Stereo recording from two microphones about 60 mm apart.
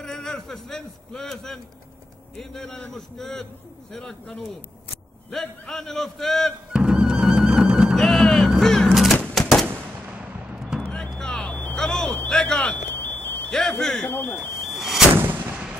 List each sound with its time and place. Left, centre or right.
0.0 s a man's voice: centre
6.7 s music: centre
8.0 s music: centre
8.5 s a sound: centre
10.1 s artillery fire: right
10.9 s vehicle: centre
11.7 s vehicle: centre
12.3 s a sound: centre
12.9 s a sound: left
13.5 s speech: centre
14.0 s speech: left
14.6 s a sound: centre
15.1 s artillery fire: right